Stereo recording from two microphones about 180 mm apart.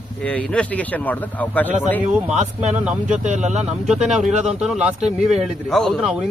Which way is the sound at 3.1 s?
40° right (ahead or behind).